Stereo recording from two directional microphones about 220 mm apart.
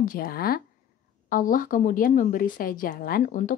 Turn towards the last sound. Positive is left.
turn(degrees=40)  # may be behind; listen again after turning